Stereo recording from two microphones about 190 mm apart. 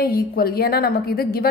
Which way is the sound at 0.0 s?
55° left (ahead or behind).